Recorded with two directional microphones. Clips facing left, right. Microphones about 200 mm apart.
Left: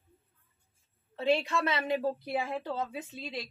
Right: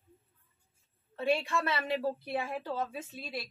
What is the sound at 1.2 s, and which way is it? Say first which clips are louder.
A woman's voice: left 2 dB; 20° left (ahead or behind).